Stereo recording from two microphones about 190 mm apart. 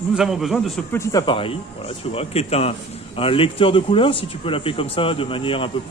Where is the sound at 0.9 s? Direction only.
20° left (ahead or behind).